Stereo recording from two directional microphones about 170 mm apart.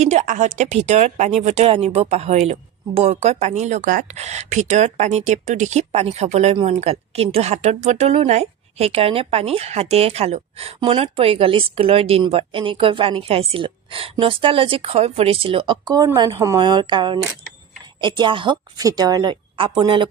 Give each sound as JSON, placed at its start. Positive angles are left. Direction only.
{"t": 0.0, "sound": "a woman's voice", "side_deg": -45}